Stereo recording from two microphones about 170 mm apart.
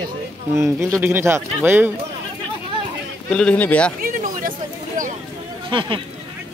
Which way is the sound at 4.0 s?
55° right (ahead or behind).